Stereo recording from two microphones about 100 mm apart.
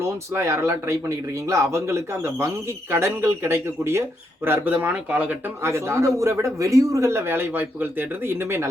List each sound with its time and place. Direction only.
0.0 s a man's voice: 30° right (ahead or behind)
5.6 s a man's voice: 25° right (ahead or behind)